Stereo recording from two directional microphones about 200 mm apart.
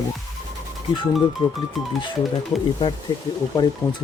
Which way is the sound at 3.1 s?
20° left (ahead or behind).